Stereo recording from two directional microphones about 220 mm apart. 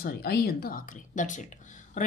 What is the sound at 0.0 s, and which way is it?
Speech, 45° left (ahead or behind).